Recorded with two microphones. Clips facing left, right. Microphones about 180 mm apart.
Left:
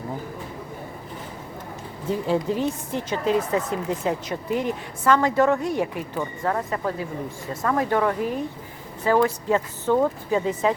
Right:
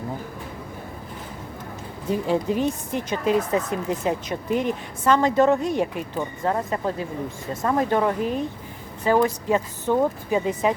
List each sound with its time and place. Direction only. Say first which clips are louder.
2.0 s speech: right 1 dB; 15° right (ahead or behind)